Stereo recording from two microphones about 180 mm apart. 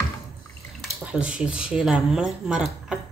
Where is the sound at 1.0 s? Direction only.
5° right (ahead or behind).